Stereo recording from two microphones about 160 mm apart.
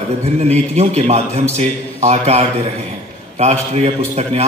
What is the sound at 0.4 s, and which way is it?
A man's voice, 45° right (ahead or behind).